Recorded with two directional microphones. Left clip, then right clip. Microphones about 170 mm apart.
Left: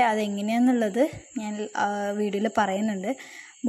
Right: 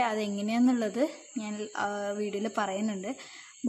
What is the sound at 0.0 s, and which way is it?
A woman's voice, 15° left (ahead or behind).